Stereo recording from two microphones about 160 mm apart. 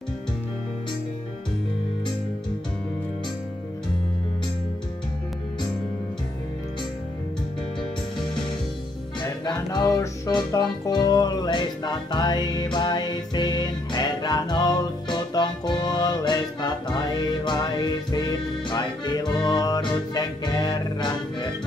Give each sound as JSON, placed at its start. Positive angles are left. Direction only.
{"t": 9.2, "sound": "music", "side_deg": 25}